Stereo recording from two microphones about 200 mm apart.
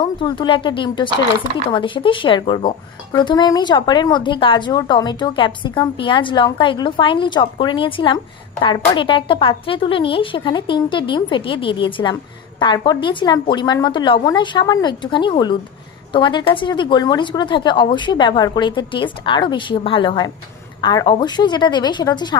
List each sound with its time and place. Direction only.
0.0 s speech: 25° left (ahead or behind)